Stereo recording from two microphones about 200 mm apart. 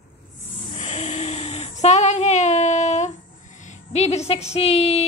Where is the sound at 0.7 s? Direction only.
35° left (ahead or behind).